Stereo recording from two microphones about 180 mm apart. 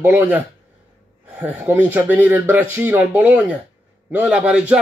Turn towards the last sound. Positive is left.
turn(degrees=-5)  # may be behind; listen again after turning